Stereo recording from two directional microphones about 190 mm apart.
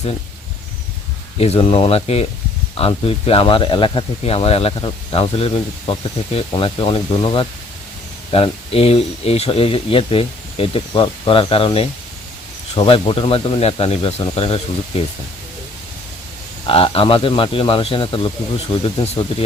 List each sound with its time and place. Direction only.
1.4 s speech: 30° left (ahead or behind)
8.7 s speech: 30° left (ahead or behind)
16.6 s speech: 30° left (ahead or behind)